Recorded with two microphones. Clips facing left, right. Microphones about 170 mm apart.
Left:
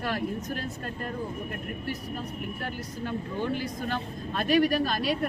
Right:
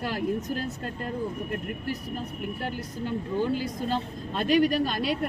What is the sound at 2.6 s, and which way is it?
Speech, 15° right (ahead or behind).